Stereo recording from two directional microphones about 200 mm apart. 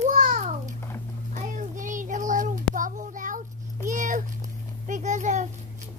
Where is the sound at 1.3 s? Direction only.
40° right (ahead or behind).